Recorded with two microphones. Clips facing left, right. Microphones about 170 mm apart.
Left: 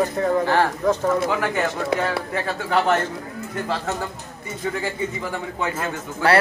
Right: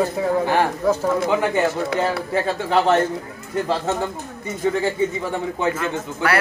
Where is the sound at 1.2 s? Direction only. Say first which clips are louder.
Right 3 dB; 20° right (ahead or behind).